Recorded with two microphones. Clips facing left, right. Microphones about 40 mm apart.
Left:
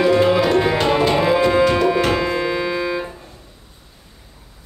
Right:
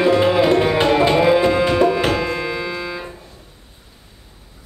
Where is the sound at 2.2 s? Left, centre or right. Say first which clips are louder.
Left 3 dB; centre.